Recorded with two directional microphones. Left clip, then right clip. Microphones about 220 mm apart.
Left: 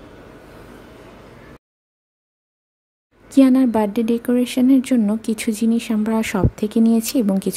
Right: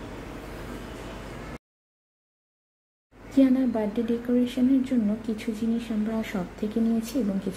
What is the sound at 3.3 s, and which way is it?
Speech, 45° left (ahead or behind).